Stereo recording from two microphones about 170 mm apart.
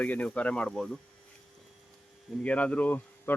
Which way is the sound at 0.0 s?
10° left (ahead or behind).